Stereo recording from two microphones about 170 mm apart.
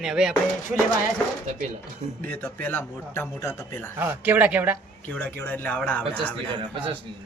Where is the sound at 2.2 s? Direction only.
10° left (ahead or behind).